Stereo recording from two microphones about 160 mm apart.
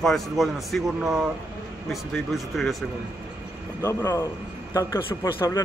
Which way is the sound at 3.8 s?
15° left (ahead or behind).